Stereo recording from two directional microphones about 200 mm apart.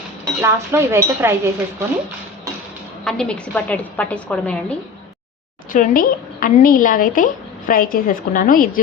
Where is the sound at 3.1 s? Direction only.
5° left (ahead or behind).